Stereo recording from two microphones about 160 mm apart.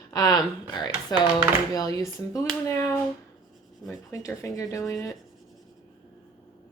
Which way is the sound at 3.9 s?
20° left (ahead or behind).